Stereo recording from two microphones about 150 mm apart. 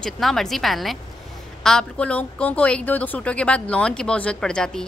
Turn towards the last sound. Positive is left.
turn(degrees=5)  # may be behind; listen again after turning